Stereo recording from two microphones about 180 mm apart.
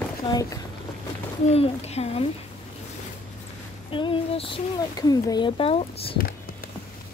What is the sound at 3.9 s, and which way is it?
Speech, 30° left (ahead or behind).